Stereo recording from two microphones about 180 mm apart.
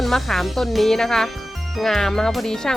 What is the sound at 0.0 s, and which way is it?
Speech, centre (ahead or behind).